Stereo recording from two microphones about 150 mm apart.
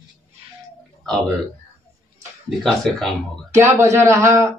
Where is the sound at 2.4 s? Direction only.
Centre (ahead or behind).